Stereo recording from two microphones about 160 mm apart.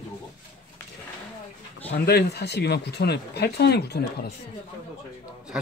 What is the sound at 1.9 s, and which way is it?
Speech, 90° left.